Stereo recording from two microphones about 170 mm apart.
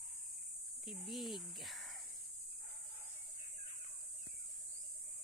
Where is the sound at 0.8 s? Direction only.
Centre (ahead or behind).